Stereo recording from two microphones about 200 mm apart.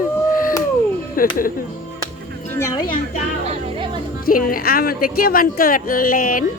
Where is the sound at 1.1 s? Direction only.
45° left (ahead or behind).